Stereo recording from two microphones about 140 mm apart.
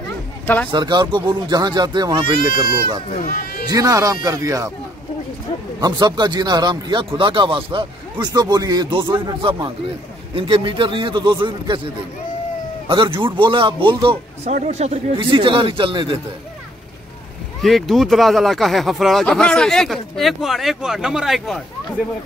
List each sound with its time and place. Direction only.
0.7 s speech: 30° right (ahead or behind)
3.2 s speech: 90° left
3.6 s speech: 25° right (ahead or behind)
5.8 s speech: 30° right (ahead or behind)
14.5 s speech: 55° right (ahead or behind)
15.1 s speech: 35° right (ahead or behind)
17.6 s speech: centre (ahead or behind)